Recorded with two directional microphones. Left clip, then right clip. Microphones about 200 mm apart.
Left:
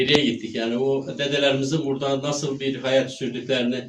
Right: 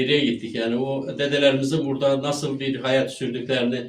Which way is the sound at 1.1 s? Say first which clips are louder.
Right 6 dB; 10° right (ahead or behind).